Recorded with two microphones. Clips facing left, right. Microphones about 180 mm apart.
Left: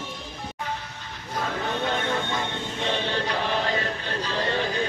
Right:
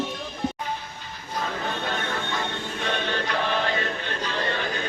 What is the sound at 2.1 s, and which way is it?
Chant, 25° left (ahead or behind).